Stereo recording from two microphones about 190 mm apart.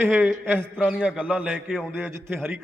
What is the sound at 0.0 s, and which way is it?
A man's voice, 10° right (ahead or behind).